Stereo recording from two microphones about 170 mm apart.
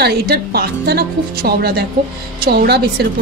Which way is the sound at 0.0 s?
65° right (ahead or behind).